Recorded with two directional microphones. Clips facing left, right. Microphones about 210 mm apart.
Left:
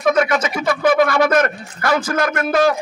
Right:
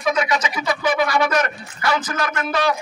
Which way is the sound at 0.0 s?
50° left (ahead or behind).